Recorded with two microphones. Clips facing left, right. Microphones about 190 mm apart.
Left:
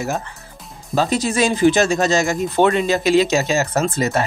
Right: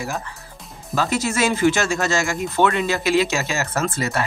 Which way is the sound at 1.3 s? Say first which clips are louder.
Left 4 dB; 15° left (ahead or behind).